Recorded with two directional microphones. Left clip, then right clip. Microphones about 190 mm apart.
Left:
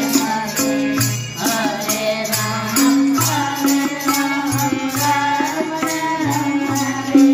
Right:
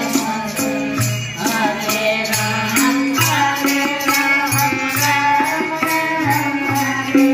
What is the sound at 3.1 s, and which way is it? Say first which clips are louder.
Music: right 3 dB; 50° left (ahead or behind).